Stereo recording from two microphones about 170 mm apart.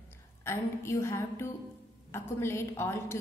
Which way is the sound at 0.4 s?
15° left (ahead or behind).